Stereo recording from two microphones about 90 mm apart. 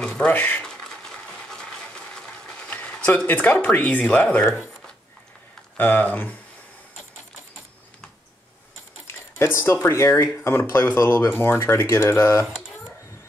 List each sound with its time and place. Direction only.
0.0 s speech: 10° left (ahead or behind)
0.7 s coin: 5° left (ahead or behind)
2.7 s a sound: 15° left (ahead or behind)
3.3 s speech: 20° left (ahead or behind)
5.8 s speech: 20° left (ahead or behind)
9.0 s speech: 30° left (ahead or behind)